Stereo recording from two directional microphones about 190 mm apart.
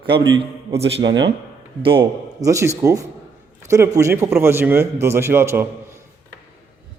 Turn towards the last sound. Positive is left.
turn(degrees=-10)  # may be behind; listen again after turning